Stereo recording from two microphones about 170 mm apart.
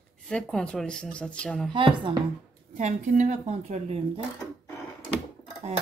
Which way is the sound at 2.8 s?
45° right (ahead or behind).